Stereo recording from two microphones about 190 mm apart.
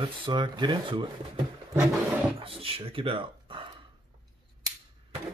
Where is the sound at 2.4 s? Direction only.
30° right (ahead or behind).